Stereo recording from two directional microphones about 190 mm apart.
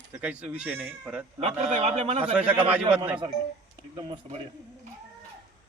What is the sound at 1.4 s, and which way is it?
Speech, 35° right (ahead or behind).